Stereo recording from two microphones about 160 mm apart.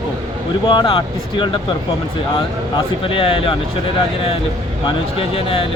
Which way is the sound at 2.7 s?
35° left (ahead or behind).